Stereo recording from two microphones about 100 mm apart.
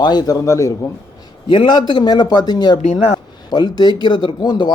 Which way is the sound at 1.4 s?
55° left (ahead or behind).